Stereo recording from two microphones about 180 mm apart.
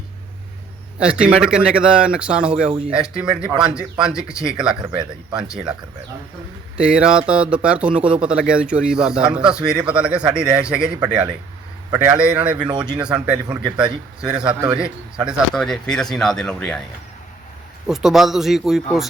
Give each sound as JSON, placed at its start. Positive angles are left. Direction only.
{"t": 0.9, "sound": "a man's voice", "side_deg": -5}
{"t": 2.6, "sound": "speech", "side_deg": -35}
{"t": 2.9, "sound": "a man's voice", "side_deg": -5}
{"t": 6.7, "sound": "a man's voice", "side_deg": -5}
{"t": 17.8, "sound": "a man's voice", "side_deg": -5}